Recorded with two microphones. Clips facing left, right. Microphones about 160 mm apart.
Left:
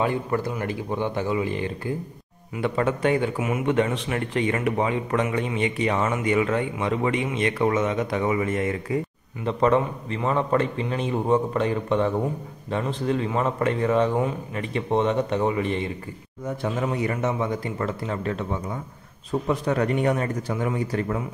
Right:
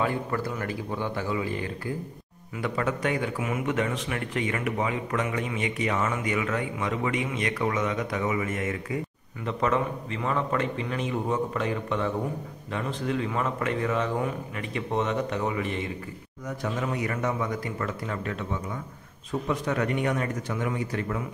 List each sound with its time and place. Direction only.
0.0 s a man's voice: 20° left (ahead or behind)